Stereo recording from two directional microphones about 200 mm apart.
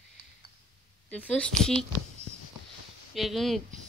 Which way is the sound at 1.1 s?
5° left (ahead or behind).